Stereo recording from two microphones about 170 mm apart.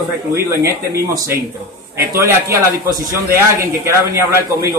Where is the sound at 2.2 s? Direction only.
15° right (ahead or behind).